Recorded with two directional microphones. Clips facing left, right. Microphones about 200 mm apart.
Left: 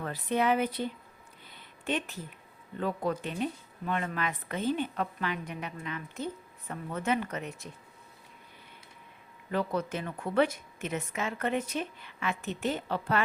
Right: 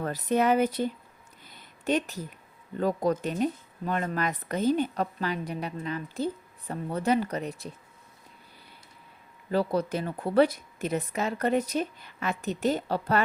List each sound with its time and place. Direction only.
0.0 s speech: 40° right (ahead or behind)
1.5 s a sound: 40° right (ahead or behind)
2.7 s speech: 40° right (ahead or behind)
9.5 s speech: 35° right (ahead or behind)